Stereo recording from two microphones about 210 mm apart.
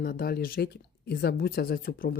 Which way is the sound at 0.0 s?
45° left (ahead or behind).